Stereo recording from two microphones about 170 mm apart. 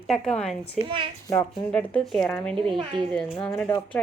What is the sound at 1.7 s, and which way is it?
Speech, 5° left (ahead or behind).